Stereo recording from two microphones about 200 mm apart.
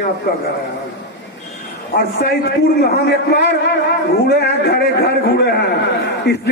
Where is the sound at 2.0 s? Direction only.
55° left (ahead or behind).